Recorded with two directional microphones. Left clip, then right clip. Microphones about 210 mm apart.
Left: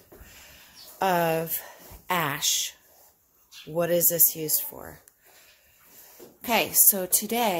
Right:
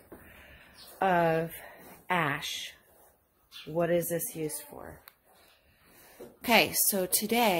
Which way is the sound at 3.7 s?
15° left (ahead or behind).